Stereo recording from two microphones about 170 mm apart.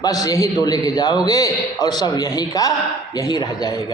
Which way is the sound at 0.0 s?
20° left (ahead or behind).